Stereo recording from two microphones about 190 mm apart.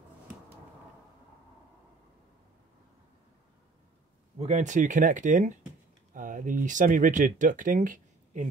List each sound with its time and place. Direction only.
4.4 s speech: 35° right (ahead or behind)